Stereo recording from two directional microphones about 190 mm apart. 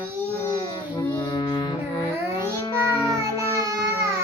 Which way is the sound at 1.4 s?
20° left (ahead or behind).